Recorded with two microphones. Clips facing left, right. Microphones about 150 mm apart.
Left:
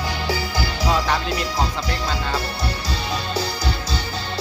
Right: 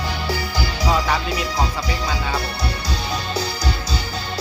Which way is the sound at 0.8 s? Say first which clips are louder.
Right 1 dB; centre (ahead or behind).